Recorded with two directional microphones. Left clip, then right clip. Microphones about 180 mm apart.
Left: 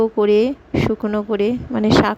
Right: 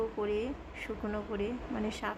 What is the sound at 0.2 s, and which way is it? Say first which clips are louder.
A woman's voice: left 19 dB; 45° left (ahead or behind).